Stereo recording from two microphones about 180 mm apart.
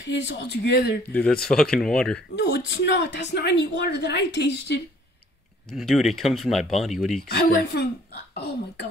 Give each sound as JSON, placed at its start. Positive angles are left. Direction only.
{"t": 0.0, "sound": "speech", "side_deg": 80}
{"t": 1.1, "sound": "speech", "side_deg": 5}
{"t": 2.3, "sound": "speech", "side_deg": 70}
{"t": 5.7, "sound": "speech", "side_deg": 0}
{"t": 7.2, "sound": "speech", "side_deg": 65}